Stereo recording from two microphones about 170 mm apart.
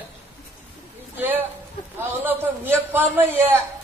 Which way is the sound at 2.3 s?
10° right (ahead or behind).